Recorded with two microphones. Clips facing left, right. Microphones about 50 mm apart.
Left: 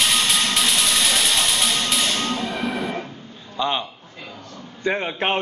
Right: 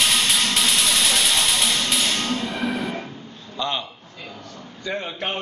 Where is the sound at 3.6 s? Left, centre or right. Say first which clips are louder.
Left 3 dB; centre.